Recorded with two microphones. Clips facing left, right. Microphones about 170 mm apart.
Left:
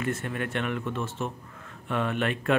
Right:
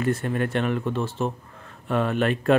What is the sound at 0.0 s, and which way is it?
Speech, 35° right (ahead or behind).